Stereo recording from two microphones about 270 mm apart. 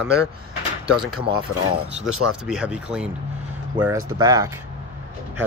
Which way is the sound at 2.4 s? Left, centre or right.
Centre.